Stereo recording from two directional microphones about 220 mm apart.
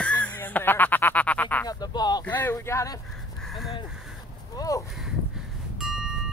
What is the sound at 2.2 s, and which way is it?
Speech, 10° left (ahead or behind).